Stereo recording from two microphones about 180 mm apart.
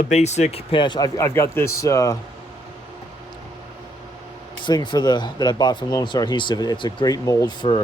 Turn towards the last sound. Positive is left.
turn(degrees=25)  # may be behind; listen again after turning